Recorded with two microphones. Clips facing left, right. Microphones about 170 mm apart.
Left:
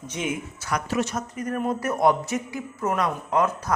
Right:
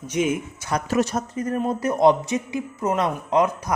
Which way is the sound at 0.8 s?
40° right (ahead or behind).